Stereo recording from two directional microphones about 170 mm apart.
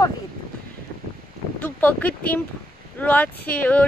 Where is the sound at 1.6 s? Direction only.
10° left (ahead or behind).